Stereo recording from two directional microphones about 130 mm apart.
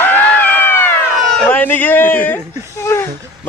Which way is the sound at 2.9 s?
20° left (ahead or behind).